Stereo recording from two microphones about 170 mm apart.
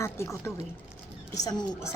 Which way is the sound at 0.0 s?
15° left (ahead or behind).